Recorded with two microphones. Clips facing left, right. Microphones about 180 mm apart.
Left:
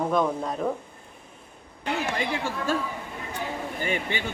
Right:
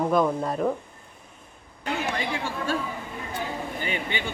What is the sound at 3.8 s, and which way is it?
Speech, 45° left (ahead or behind).